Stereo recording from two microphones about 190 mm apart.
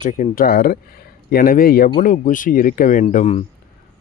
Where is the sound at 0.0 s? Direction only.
40° left (ahead or behind).